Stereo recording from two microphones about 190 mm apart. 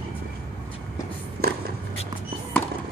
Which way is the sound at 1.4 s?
55° right (ahead or behind).